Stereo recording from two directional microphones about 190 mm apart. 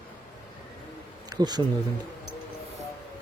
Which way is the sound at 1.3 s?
20° right (ahead or behind).